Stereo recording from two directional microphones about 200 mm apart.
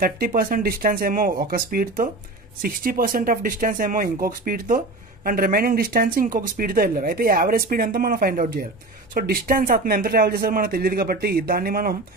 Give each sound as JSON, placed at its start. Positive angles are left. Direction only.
{"t": 0.0, "sound": "speech", "side_deg": -45}